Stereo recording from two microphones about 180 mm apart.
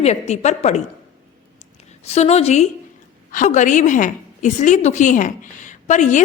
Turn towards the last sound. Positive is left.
turn(degrees=40)  # may be behind; listen again after turning